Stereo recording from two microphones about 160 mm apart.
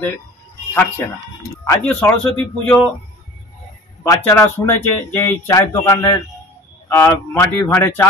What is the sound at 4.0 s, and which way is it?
A man's voice, 15° left (ahead or behind).